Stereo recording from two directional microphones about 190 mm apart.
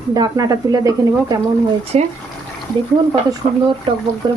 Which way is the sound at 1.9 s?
30° right (ahead or behind).